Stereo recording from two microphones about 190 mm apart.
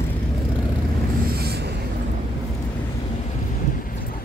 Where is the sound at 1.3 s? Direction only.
55° right (ahead or behind).